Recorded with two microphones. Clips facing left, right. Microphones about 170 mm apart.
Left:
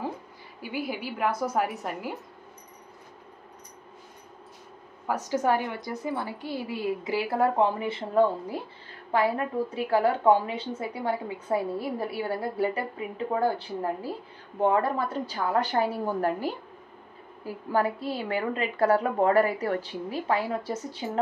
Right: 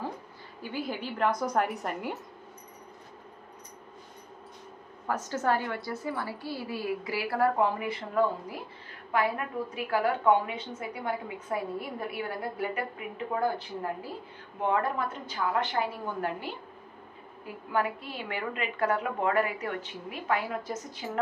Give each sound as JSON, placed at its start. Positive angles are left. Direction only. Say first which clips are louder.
{"t": 0.6, "sound": "a woman's voice", "louder": "left 2 dB", "side_deg": 10}
{"t": 5.0, "sound": "a woman's voice", "louder": "left 3 dB", "side_deg": 10}
{"t": 14.7, "sound": "a woman's voice", "louder": "left 1 dB", "side_deg": 35}
{"t": 17.6, "sound": "a woman's voice", "louder": "left 4 dB", "side_deg": 35}